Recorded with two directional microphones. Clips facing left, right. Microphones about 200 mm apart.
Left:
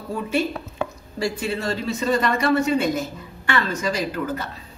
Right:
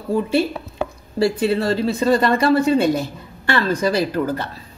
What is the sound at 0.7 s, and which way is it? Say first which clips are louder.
Speech: right 11 dB; 30° right (ahead or behind).